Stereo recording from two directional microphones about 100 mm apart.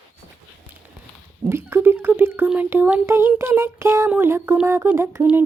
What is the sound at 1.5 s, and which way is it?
Speech, 25° right (ahead or behind).